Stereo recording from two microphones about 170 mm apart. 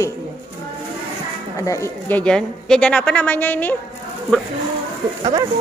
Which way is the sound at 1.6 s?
15° left (ahead or behind).